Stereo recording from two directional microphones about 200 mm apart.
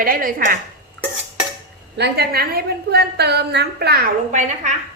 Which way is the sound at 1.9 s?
55° right (ahead or behind).